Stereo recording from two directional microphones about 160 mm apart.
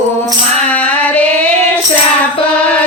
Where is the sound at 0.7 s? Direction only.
10° left (ahead or behind).